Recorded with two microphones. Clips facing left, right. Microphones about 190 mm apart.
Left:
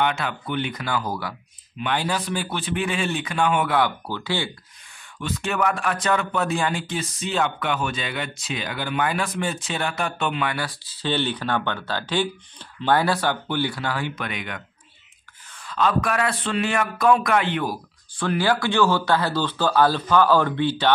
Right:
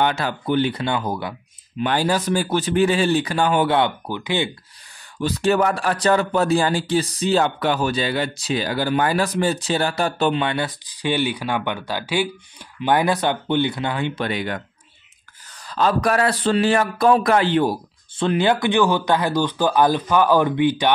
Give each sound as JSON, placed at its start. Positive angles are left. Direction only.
{"t": 0.0, "sound": "speech", "side_deg": -35}
{"t": 1.8, "sound": "speech", "side_deg": -40}
{"t": 5.2, "sound": "speech", "side_deg": -35}